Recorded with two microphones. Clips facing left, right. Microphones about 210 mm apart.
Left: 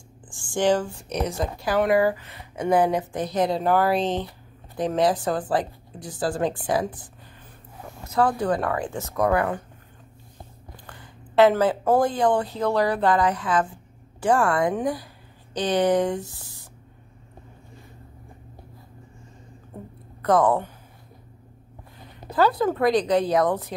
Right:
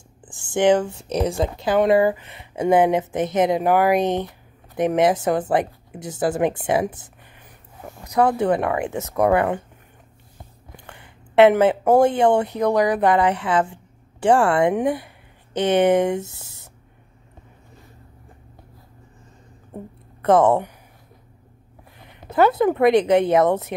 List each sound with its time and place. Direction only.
0.3 s speech: 20° right (ahead or behind)
10.9 s speech: 25° right (ahead or behind)
20.2 s speech: 25° right (ahead or behind)
22.3 s speech: 25° right (ahead or behind)